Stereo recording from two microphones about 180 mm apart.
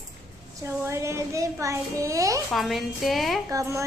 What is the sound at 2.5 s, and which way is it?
Music, centre (ahead or behind).